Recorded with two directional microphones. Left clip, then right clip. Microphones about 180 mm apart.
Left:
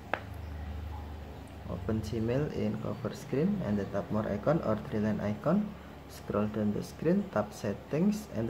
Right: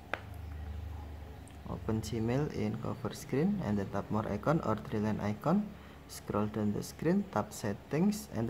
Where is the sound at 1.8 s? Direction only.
25° right (ahead or behind).